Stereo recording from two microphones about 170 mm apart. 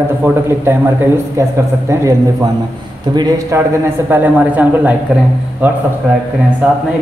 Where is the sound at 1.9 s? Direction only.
15° right (ahead or behind).